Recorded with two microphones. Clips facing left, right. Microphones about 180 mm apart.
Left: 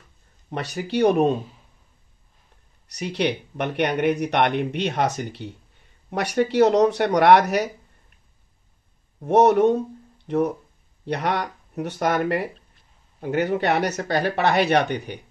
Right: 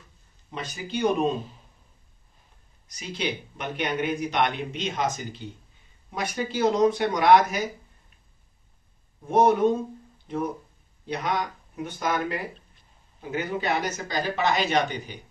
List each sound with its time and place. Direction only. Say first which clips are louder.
0.5 s speech: left 6 dB; 70° left (ahead or behind)
2.9 s speech: left 7 dB; 70° left (ahead or behind)
9.2 s speech: left 4 dB; 75° left (ahead or behind)